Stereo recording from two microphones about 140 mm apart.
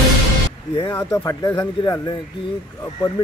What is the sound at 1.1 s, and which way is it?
Speech, 25° left (ahead or behind).